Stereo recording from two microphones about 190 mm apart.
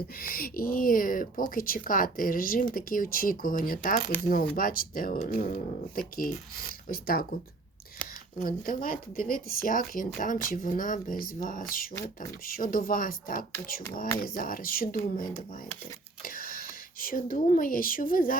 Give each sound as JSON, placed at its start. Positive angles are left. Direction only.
{"t": 0.2, "sound": "a woman's voice", "side_deg": 50}
{"t": 8.4, "sound": "a woman's voice", "side_deg": 45}